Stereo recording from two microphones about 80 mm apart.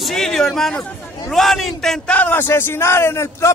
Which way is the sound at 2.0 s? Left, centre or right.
Centre.